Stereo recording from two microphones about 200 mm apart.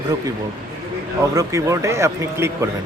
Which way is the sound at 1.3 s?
15° right (ahead or behind).